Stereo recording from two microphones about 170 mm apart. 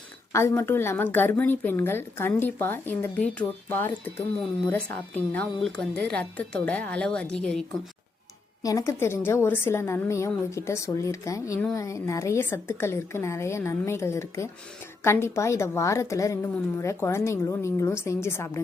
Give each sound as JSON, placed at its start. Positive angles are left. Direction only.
{"t": 0.3, "sound": "a woman's voice", "side_deg": 15}
{"t": 8.6, "sound": "a woman's voice", "side_deg": 20}